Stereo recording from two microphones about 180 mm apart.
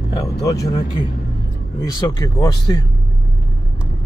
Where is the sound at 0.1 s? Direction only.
20° left (ahead or behind).